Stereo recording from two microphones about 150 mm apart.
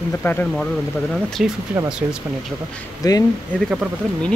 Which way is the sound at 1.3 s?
5° right (ahead or behind).